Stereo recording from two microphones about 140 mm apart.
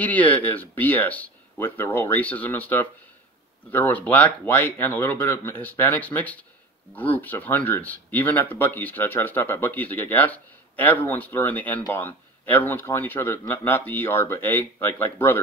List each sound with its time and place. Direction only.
0.0 s speech: 10° left (ahead or behind)